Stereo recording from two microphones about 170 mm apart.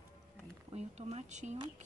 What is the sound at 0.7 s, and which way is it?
Speech, 40° right (ahead or behind).